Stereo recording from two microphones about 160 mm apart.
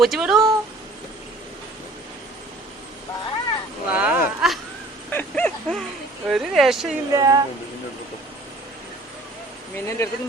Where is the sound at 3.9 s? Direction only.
5° right (ahead or behind).